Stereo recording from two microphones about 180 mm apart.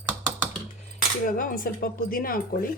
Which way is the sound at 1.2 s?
50° left (ahead or behind).